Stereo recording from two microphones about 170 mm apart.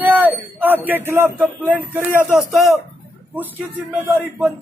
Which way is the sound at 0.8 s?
10° right (ahead or behind).